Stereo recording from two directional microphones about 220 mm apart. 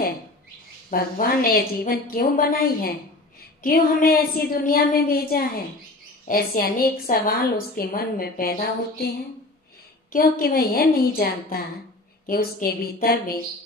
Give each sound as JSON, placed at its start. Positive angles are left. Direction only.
{"t": 0.8, "sound": "a woman's voice", "side_deg": 40}
{"t": 10.1, "sound": "a woman's voice", "side_deg": 40}